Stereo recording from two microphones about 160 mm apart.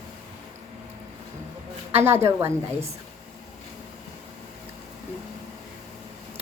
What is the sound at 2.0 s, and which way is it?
Speech, 15° right (ahead or behind).